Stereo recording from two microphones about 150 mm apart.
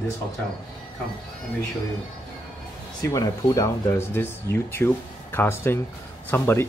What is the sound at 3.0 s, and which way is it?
Speech, 25° left (ahead or behind).